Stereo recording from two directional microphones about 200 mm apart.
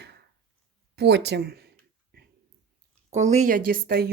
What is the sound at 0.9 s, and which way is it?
Speech, 55° right (ahead or behind).